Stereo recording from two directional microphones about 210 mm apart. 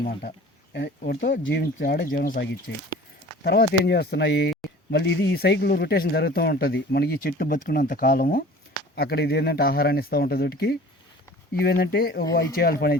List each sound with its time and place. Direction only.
0.0 s speech: 45° left (ahead or behind)